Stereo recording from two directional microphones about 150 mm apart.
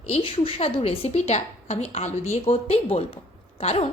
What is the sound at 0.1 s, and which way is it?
A woman's voice, 40° left (ahead or behind).